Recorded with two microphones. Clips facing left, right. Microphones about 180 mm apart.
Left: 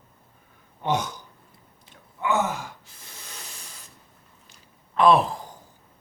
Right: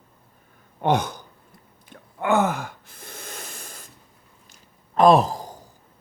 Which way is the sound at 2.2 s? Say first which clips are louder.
Right 4 dB; 55° right (ahead or behind).